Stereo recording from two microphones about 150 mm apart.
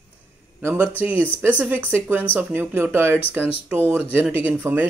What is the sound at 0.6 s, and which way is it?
A man's voice, 15° right (ahead or behind).